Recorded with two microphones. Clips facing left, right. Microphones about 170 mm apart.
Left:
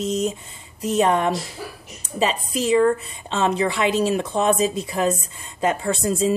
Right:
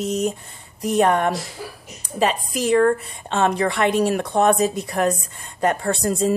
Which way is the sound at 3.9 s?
65° right (ahead or behind).